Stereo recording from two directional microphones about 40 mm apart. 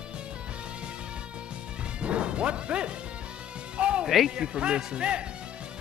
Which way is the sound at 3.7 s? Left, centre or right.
Right.